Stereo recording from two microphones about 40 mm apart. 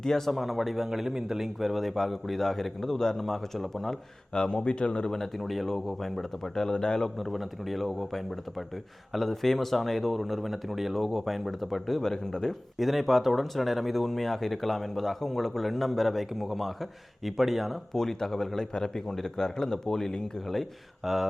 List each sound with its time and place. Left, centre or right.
0.0 s a man's voice: centre
0.3 s speech: centre
4.4 s a man's voice: left
5.1 s a man's voice: centre
7.2 s speech: centre
12.8 s speech: centre
17.9 s a man's voice: centre
20.5 s speech: centre